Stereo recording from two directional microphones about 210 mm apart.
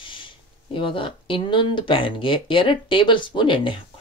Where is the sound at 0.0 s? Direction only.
25° left (ahead or behind).